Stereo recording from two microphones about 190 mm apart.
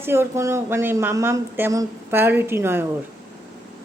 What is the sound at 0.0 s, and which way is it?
A woman's voice, 15° right (ahead or behind).